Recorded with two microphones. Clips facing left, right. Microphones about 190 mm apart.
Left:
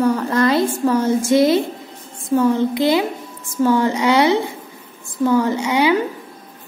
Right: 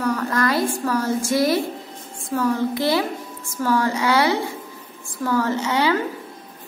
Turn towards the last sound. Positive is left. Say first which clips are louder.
# left 4 dB
turn(degrees=15)  # may be behind; listen again after turning